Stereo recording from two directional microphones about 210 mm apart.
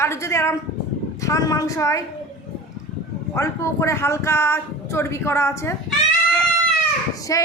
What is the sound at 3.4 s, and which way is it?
Speech, 15° left (ahead or behind).